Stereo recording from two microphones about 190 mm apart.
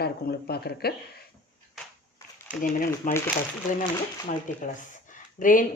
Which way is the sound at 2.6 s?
45° left (ahead or behind).